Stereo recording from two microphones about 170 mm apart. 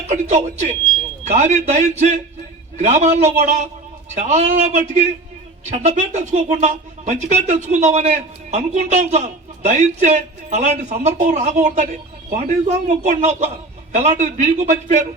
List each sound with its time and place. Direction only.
0.1 s speech: 45° right (ahead or behind)